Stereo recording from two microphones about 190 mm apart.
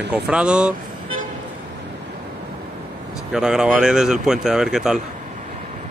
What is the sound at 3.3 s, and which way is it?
Speech, 5° right (ahead or behind).